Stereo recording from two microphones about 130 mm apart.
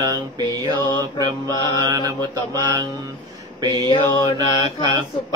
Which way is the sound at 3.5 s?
30° right (ahead or behind).